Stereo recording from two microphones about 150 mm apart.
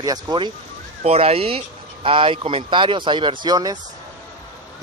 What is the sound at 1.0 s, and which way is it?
Speech, 40° right (ahead or behind).